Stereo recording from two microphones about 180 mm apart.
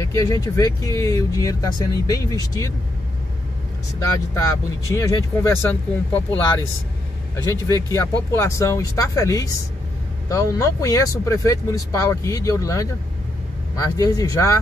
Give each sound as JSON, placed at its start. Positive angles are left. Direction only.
{"t": 0.0, "sound": "speech", "side_deg": 20}
{"t": 4.3, "sound": "speech", "side_deg": 15}